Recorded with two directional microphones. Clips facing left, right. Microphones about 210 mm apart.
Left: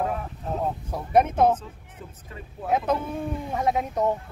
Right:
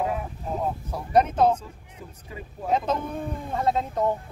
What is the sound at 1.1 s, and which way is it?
Speech, 10° left (ahead or behind).